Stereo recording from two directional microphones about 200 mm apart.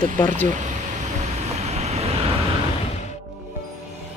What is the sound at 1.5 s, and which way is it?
Vehicle, 35° right (ahead or behind).